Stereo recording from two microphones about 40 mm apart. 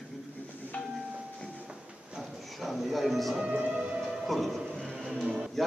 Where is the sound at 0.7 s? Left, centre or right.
Left.